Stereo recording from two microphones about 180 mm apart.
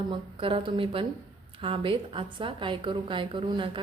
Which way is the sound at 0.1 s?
30° right (ahead or behind).